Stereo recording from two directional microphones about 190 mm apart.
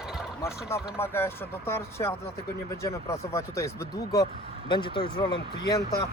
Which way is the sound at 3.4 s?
15° left (ahead or behind).